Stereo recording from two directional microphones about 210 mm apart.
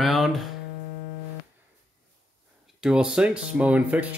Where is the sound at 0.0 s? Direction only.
Centre (ahead or behind).